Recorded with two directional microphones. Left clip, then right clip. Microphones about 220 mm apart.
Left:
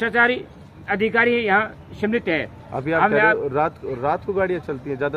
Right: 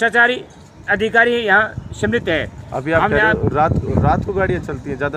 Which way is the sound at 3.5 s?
40° right (ahead or behind).